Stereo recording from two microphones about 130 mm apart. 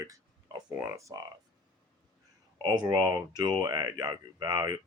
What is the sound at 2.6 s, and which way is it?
Speech, 30° right (ahead or behind).